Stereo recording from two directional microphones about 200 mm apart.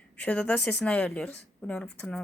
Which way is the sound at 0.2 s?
5° left (ahead or behind).